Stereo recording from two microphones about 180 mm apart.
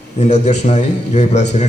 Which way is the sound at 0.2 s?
40° left (ahead or behind).